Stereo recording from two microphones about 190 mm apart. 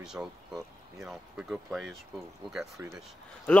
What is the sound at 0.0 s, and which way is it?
Speech, 5° right (ahead or behind).